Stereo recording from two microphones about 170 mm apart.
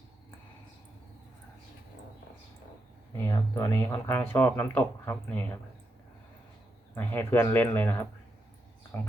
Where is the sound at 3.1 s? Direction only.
20° left (ahead or behind).